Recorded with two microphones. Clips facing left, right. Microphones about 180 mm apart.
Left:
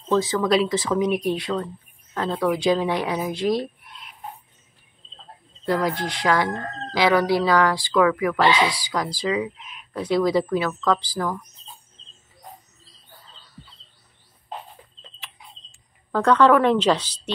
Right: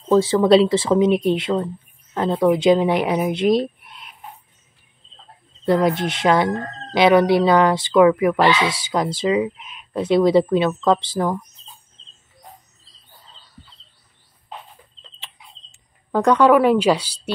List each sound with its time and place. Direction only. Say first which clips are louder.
0.1 s chicken: right 6 dB; 30° right (ahead or behind)
5.7 s chicken: right 5 dB; 20° right (ahead or behind)
15.7 s speech: right 4 dB; 15° right (ahead or behind)